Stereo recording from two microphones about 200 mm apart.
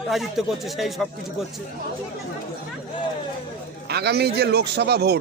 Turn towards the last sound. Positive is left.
turn(degrees=-55)  # may be behind; listen again after turning